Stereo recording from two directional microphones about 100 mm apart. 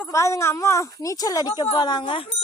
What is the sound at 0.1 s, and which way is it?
Speech, 30° left (ahead or behind).